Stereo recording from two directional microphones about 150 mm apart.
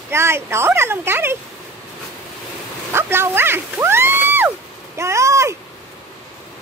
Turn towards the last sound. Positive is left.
turn(degrees=-20)  # may be behind; listen again after turning